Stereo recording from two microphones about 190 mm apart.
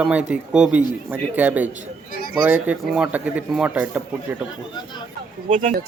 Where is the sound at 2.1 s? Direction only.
50° left (ahead or behind).